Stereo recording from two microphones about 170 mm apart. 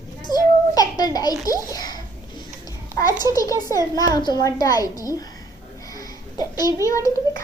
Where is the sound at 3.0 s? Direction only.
20° left (ahead or behind).